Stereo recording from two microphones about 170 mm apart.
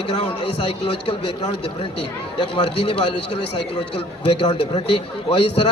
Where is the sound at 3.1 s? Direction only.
85° left.